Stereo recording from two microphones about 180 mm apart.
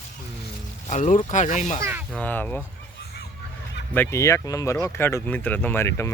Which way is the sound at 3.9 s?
10° left (ahead or behind).